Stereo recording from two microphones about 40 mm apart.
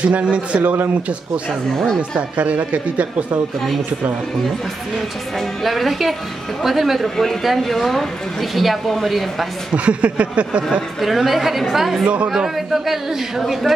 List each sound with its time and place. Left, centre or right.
0.0 s speech: right
2.0 s speech: right
5.6 s speech: centre
9.8 s a sound: right
11.0 s speech: centre